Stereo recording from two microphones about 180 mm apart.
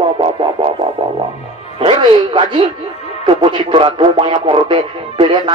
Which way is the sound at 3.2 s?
25° right (ahead or behind).